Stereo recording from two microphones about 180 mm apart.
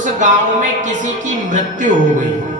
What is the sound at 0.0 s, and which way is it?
Speech, 45° right (ahead or behind).